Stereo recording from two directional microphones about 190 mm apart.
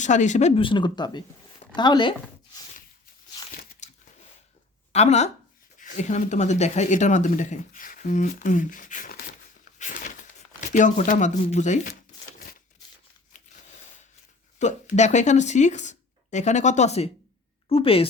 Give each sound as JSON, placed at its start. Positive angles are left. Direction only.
{"t": 0.0, "sound": "speech", "side_deg": 40}
{"t": 3.8, "sound": "biting", "side_deg": 40}
{"t": 4.9, "sound": "speech", "side_deg": 35}
{"t": 9.7, "sound": "a sound", "side_deg": 45}
{"t": 10.6, "sound": "speech", "side_deg": 40}
{"t": 14.6, "sound": "speech", "side_deg": 40}